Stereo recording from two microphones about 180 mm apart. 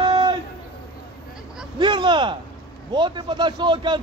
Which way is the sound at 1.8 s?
25° right (ahead or behind).